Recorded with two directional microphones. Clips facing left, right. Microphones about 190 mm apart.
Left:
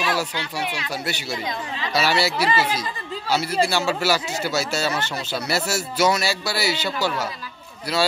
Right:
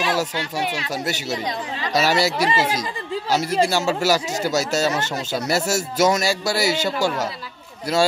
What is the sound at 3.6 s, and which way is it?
Speech, 40° right (ahead or behind).